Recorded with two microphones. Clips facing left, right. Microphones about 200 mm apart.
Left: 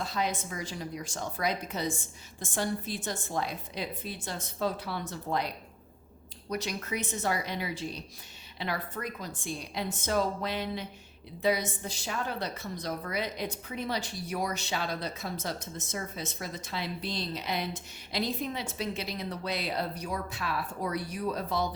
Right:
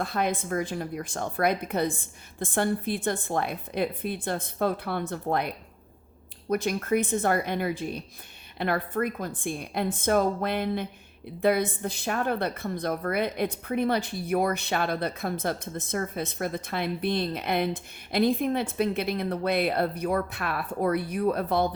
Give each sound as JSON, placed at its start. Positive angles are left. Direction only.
{"t": 0.0, "sound": "a woman's voice", "side_deg": -55}